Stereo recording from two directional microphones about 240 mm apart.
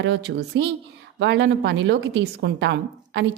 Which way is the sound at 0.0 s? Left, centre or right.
Right.